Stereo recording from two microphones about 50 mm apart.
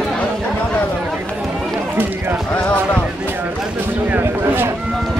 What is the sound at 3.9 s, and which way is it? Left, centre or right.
Speech, right.